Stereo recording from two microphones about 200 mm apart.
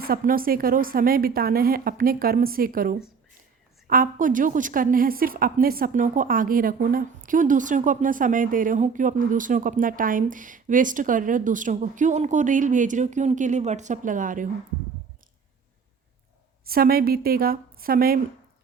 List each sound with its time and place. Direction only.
0.0 s a woman's voice: 45° right (ahead or behind)
16.6 s a woman's voice: 50° right (ahead or behind)